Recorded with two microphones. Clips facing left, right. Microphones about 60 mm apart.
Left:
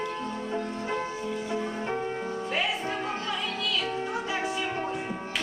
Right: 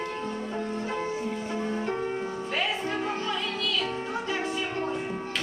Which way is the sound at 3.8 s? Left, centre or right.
Centre.